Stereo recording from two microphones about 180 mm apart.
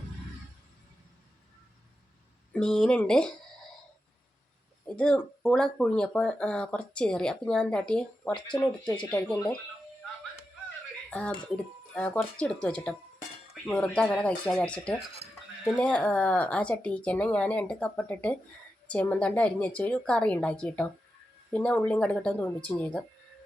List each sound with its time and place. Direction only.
2.5 s speech: 5° left (ahead or behind)
4.9 s speech: 5° left (ahead or behind)
11.1 s speech: 5° left (ahead or behind)